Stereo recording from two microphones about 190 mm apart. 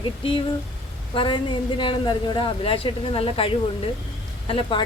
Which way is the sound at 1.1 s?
25° left (ahead or behind).